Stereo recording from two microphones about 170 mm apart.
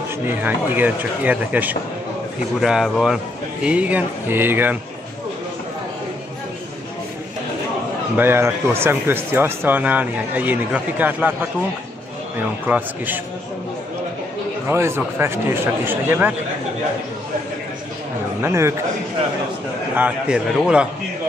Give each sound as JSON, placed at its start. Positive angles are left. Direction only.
{"t": 0.4, "sound": "a man's voice", "side_deg": -10}
{"t": 8.2, "sound": "speech", "side_deg": -10}
{"t": 12.6, "sound": "speech", "side_deg": -10}
{"t": 14.7, "sound": "speech", "side_deg": -15}
{"t": 18.4, "sound": "speech", "side_deg": -15}
{"t": 20.0, "sound": "a man's voice", "side_deg": -5}